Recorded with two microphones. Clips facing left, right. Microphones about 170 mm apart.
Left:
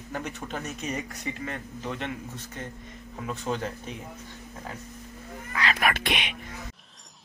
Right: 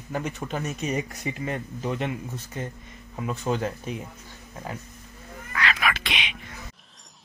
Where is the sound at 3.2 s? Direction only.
5° right (ahead or behind).